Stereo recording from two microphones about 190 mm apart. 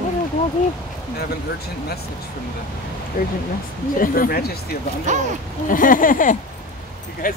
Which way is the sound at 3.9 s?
45° left (ahead or behind).